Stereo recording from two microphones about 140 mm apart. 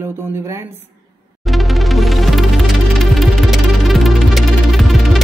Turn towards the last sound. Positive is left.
turn(degrees=0)  # may be behind; listen again after turning